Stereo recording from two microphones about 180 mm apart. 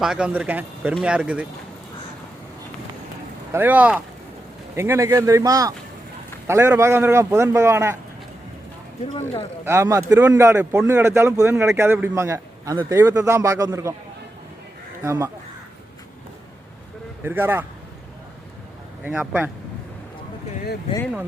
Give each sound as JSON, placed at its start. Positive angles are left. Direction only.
{"t": 0.0, "sound": "a man's voice", "side_deg": -5}
{"t": 3.5, "sound": "a man's voice", "side_deg": -10}
{"t": 9.6, "sound": "a man's voice", "side_deg": -15}
{"t": 15.0, "sound": "a man's voice", "side_deg": -15}
{"t": 17.2, "sound": "a man's voice", "side_deg": -10}
{"t": 19.0, "sound": "a man's voice", "side_deg": -10}